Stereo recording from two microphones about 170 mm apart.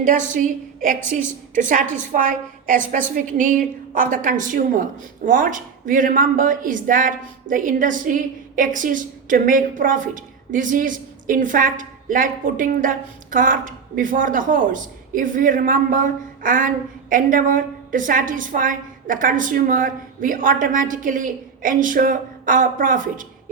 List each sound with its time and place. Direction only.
0.3 s a woman's voice: 50° right (ahead or behind)